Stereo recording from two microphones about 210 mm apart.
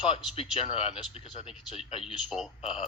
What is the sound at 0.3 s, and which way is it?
Speech, 25° left (ahead or behind).